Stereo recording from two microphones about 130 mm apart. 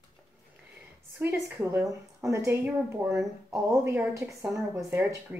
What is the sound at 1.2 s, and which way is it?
A woman's voice, 15° right (ahead or behind).